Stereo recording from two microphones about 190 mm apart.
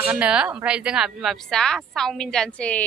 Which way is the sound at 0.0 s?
5° right (ahead or behind).